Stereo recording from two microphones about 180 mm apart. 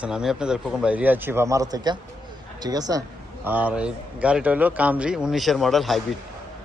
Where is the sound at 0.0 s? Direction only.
5° right (ahead or behind); by 3.0 s 20° right (ahead or behind).